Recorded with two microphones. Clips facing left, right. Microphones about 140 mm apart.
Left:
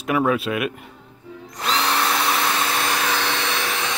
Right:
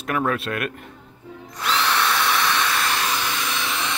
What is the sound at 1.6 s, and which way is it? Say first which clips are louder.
Drill: even; 35° left (ahead or behind).